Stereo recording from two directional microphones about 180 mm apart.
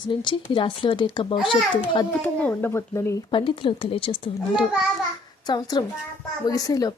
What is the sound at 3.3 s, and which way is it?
Speech, 30° left (ahead or behind).